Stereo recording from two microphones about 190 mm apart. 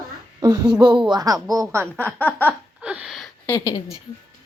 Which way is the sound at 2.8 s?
5° right (ahead or behind).